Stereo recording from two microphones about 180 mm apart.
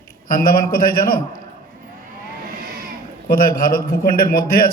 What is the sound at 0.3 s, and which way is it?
Speech, 50° left (ahead or behind).